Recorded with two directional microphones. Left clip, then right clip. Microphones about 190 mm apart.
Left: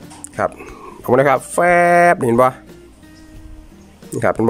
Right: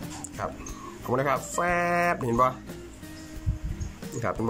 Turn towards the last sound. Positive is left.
turn(degrees=50)  # may be behind; listen again after turning